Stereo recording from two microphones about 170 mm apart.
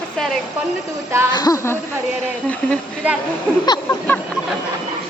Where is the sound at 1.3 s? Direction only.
20° left (ahead or behind).